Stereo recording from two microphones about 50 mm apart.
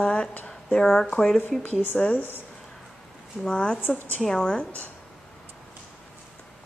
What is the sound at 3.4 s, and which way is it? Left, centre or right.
A woman's voice, centre.